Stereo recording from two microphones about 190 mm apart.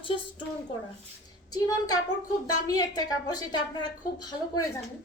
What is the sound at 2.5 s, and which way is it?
Speech, 20° left (ahead or behind).